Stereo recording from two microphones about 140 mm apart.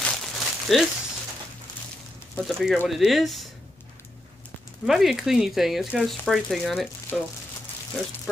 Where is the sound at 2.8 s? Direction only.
Centre (ahead or behind).